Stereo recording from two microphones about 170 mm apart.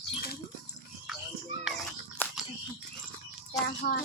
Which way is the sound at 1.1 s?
Centre (ahead or behind).